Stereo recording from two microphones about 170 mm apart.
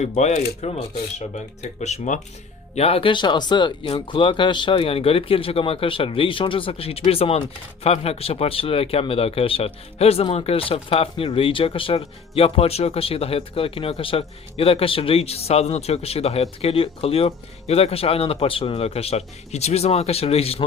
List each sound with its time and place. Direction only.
0.0 s speech: 40° left (ahead or behind)